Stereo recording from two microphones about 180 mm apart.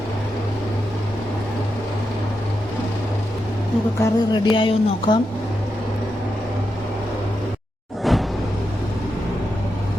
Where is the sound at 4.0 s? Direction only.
25° left (ahead or behind).